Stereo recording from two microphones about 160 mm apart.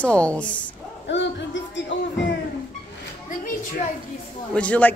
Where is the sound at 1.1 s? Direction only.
90° left.